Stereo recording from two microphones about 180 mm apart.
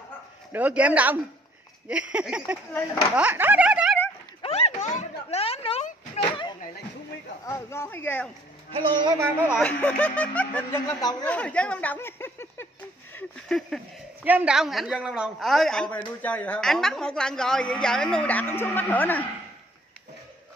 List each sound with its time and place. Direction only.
0.5 s a man's voice: 10° right (ahead or behind)
4.4 s a sound: 35° left (ahead or behind)
7.4 s speech: 15° left (ahead or behind)
8.7 s a woman's voice: 25° right (ahead or behind)
9.2 s a man's voice: 10° right (ahead or behind)
9.6 s speech: 5° left (ahead or behind)
11.2 s speech: 5° left (ahead or behind)
13.1 s speech: centre (ahead or behind)